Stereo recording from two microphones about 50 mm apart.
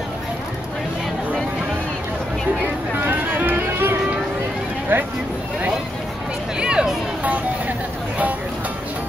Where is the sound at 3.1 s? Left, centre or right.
Right.